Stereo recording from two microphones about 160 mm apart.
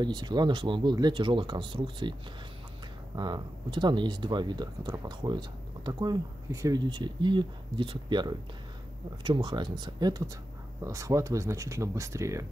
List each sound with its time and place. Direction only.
0.0 s speech: 25° right (ahead or behind)
3.2 s speech: 25° right (ahead or behind)